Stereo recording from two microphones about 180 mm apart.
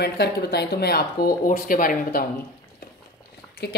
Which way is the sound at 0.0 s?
65° left (ahead or behind).